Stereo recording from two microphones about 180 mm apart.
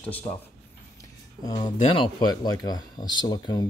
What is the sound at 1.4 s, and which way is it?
Speech, 20° left (ahead or behind).